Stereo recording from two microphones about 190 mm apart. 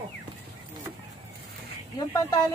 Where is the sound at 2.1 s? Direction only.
20° left (ahead or behind).